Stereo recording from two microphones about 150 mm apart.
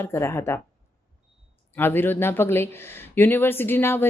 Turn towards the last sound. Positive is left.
turn(degrees=15)  # may be behind; listen again after turning